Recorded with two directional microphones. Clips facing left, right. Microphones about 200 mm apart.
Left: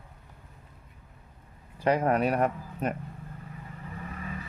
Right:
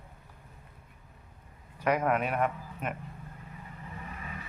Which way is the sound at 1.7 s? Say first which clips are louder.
Left 3 dB; 30° left (ahead or behind).